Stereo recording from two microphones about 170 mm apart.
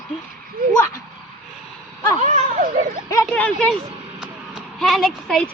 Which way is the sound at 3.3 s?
10° left (ahead or behind).